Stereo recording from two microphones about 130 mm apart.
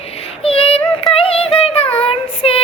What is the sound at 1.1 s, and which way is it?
Female singing, 50° left (ahead or behind).